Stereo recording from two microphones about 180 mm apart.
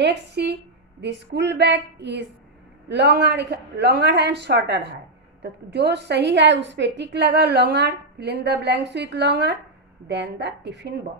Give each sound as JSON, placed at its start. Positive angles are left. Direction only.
{"t": 0.0, "sound": "a woman's voice", "side_deg": -65}